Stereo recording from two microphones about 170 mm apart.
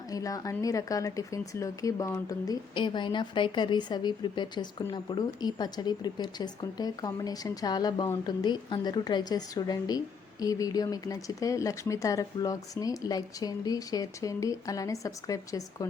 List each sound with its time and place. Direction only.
0.1 s speech: 20° left (ahead or behind)